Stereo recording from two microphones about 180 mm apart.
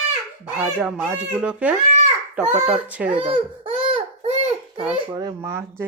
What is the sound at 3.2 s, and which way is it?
Baby cry, 30° right (ahead or behind).